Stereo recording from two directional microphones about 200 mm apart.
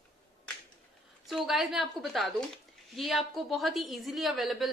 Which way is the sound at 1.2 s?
Centre (ahead or behind).